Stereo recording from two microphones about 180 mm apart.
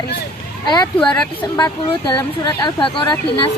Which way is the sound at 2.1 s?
25° left (ahead or behind).